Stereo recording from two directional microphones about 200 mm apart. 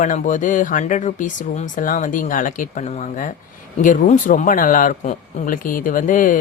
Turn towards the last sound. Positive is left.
turn(degrees=40)  # may be behind; listen again after turning